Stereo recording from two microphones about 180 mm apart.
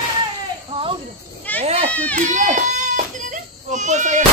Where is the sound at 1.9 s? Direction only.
10° left (ahead or behind).